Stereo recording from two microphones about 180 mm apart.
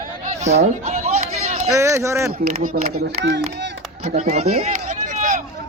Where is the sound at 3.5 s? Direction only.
65° right (ahead or behind).